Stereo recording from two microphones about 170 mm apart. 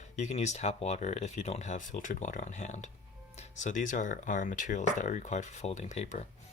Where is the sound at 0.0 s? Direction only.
40° left (ahead or behind).